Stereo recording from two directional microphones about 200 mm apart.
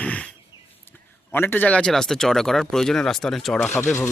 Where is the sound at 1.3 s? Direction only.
10° left (ahead or behind).